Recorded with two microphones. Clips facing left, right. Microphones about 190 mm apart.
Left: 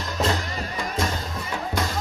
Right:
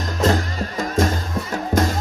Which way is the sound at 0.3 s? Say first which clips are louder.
Right 6 dB; 45° right (ahead or behind).